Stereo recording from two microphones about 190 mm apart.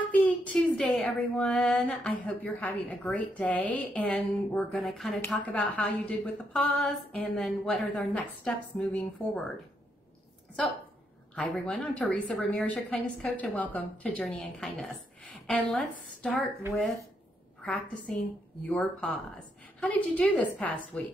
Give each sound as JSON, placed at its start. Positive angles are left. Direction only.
{"t": 0.0, "sound": "speech", "side_deg": 5}
{"t": 11.3, "sound": "speech", "side_deg": 5}
{"t": 17.6, "sound": "a woman's voice", "side_deg": 5}